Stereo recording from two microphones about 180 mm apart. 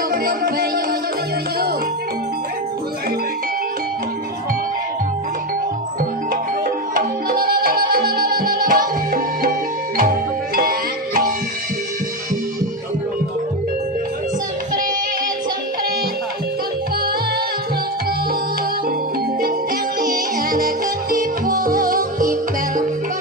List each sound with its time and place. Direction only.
0.1 s music: 55° right (ahead or behind)
6.9 s music: 50° right (ahead or behind)
20.0 s music: 50° right (ahead or behind)